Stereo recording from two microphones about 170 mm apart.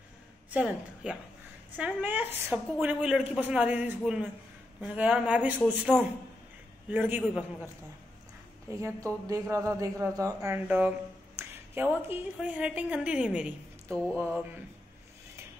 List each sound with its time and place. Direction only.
0.5 s a woman's voice: 10° right (ahead or behind)
5.9 s a man's voice: 20° left (ahead or behind)
6.9 s speech: 10° right (ahead or behind)